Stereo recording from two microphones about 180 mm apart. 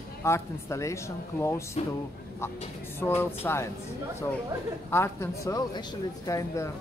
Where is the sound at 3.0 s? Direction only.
15° left (ahead or behind).